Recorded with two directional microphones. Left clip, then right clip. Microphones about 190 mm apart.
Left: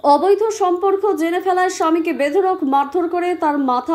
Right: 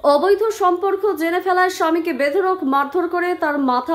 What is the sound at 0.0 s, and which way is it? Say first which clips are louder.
A woman's voice: left 1 dB; 10° left (ahead or behind).